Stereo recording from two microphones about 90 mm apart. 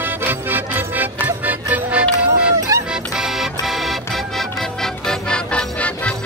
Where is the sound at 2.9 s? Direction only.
5° right (ahead or behind).